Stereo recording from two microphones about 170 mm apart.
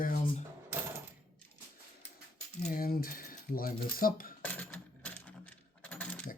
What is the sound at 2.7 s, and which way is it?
Speech, 60° left (ahead or behind).